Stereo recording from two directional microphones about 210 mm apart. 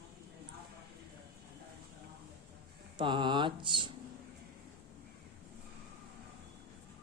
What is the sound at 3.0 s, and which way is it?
Mantra, 20° right (ahead or behind).